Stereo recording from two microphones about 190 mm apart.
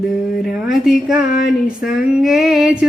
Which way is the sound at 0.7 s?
Centre (ahead or behind).